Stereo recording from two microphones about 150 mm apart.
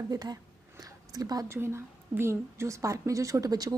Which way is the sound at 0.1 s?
25° right (ahead or behind).